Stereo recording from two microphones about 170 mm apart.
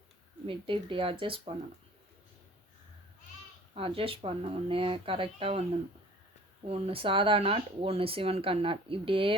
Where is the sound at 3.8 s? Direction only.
35° right (ahead or behind).